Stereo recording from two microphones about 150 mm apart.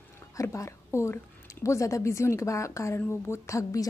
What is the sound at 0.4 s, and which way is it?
Speech, 20° left (ahead or behind).